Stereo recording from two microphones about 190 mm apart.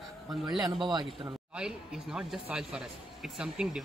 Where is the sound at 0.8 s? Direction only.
25° right (ahead or behind).